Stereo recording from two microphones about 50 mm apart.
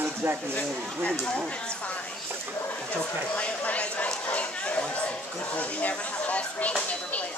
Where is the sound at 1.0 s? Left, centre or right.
Centre.